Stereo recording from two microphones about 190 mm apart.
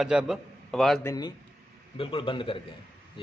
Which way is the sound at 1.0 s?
20° left (ahead or behind).